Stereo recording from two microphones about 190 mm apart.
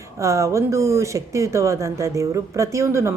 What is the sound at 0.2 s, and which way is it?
Speech, 15° right (ahead or behind).